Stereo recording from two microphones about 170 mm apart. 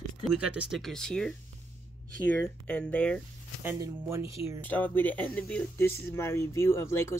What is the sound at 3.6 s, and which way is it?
Speech, 15° right (ahead or behind).